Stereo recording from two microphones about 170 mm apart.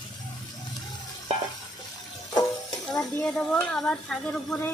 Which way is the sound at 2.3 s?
20° left (ahead or behind).